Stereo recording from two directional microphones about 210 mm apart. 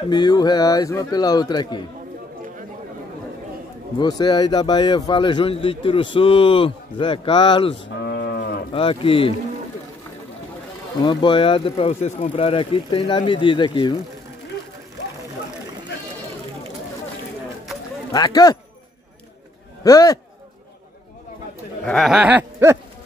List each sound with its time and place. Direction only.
0.1 s speech: 20° left (ahead or behind)
4.0 s speech: 20° left (ahead or behind)
7.7 s moo: 55° left (ahead or behind)
8.7 s speech: 25° left (ahead or behind)
11.1 s speech: 20° left (ahead or behind)
18.1 s speech: 15° left (ahead or behind)
19.8 s speech: 15° left (ahead or behind)
21.8 s a sound: centre (ahead or behind)